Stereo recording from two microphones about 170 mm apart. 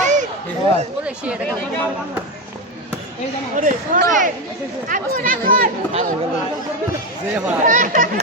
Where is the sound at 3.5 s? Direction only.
50° right (ahead or behind).